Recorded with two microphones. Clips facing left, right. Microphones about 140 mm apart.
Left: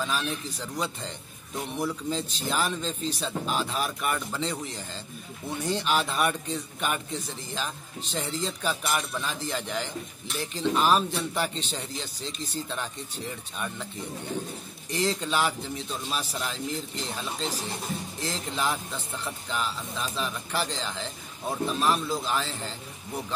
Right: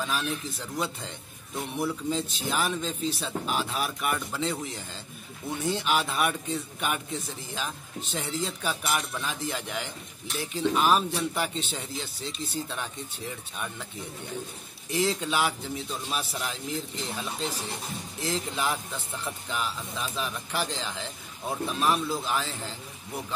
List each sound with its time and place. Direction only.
0.0 s speech: 5° right (ahead or behind)
5.6 s speech: 10° right (ahead or behind)
12.6 s speech: 10° right (ahead or behind)
14.9 s speech: 10° right (ahead or behind)